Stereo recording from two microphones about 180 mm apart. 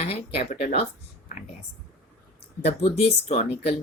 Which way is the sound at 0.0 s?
35° left (ahead or behind).